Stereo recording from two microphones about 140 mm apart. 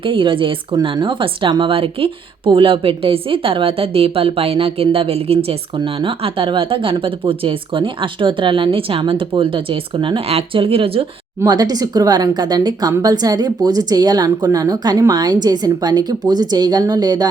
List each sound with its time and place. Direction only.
0.0 s a woman's voice: 35° right (ahead or behind)
11.4 s speech: 30° right (ahead or behind)